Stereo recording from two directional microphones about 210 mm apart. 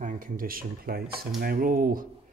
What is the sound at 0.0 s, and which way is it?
Speech, 40° right (ahead or behind).